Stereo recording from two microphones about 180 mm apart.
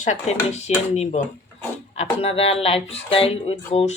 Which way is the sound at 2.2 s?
35° left (ahead or behind).